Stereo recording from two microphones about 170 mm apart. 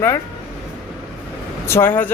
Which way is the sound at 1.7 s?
10° left (ahead or behind).